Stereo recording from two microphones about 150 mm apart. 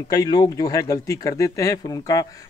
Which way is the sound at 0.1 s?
25° left (ahead or behind).